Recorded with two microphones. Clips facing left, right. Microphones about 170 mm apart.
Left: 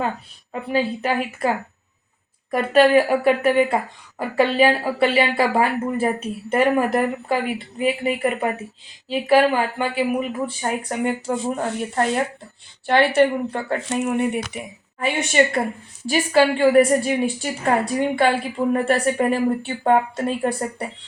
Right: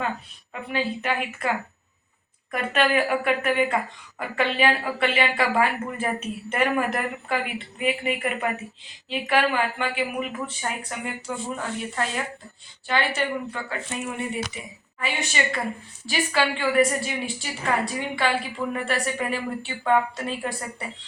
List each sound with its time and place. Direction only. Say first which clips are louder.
0.5 s speech: left 6 dB; 35° left (ahead or behind)
12.9 s a woman's voice: left 9 dB; 60° left (ahead or behind)
13.7 s speech: left 8 dB; 75° left (ahead or behind)
14.2 s a woman's voice: left 7 dB; 60° left (ahead or behind)